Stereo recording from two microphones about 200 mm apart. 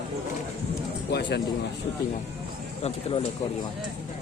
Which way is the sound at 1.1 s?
60° left (ahead or behind).